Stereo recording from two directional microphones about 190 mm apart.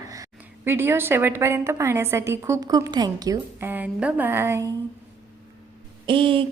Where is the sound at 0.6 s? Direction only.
10° right (ahead or behind).